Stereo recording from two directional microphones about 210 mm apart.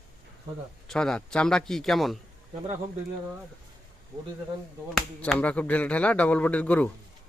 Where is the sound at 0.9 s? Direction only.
5° left (ahead or behind).